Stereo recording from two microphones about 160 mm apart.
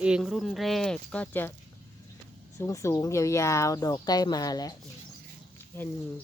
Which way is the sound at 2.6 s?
20° left (ahead or behind).